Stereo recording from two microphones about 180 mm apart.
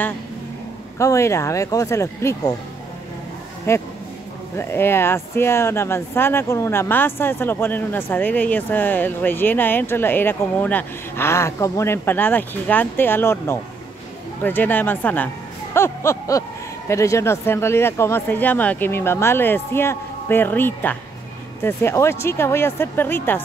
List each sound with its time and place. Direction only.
0.9 s speech: 15° left (ahead or behind)
3.7 s speech: 15° left (ahead or behind)
15.7 s a sound: 15° left (ahead or behind)
16.9 s speech: 15° left (ahead or behind)